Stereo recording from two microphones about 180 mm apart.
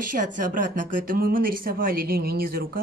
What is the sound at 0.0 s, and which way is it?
Speech, 45° right (ahead or behind).